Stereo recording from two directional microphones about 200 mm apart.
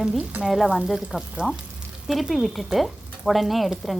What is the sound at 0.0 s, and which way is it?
Stir, centre (ahead or behind).